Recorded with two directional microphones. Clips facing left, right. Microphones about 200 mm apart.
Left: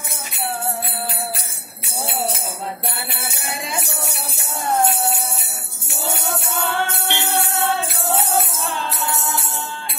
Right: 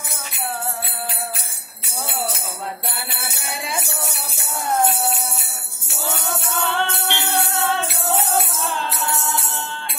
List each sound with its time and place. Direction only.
6.6 s music: 20° left (ahead or behind)